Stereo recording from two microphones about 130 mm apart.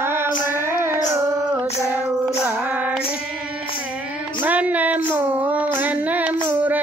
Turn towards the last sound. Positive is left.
turn(degrees=-15)  # may be behind; listen again after turning